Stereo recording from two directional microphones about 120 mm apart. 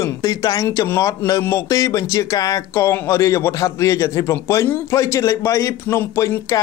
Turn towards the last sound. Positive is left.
turn(degrees=25)  # may be behind; listen again after turning